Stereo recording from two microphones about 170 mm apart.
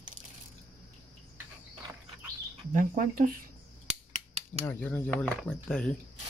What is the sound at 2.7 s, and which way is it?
Speech, 50° right (ahead or behind).